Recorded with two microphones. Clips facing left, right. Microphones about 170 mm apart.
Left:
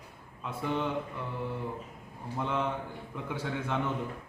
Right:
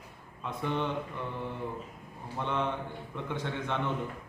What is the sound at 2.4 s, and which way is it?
A man's voice, 5° left (ahead or behind).